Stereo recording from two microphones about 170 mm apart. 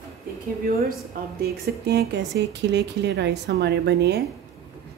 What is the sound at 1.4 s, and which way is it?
Speech, 70° right (ahead or behind).